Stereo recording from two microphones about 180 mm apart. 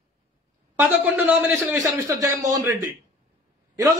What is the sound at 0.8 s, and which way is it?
Speech, 5° right (ahead or behind).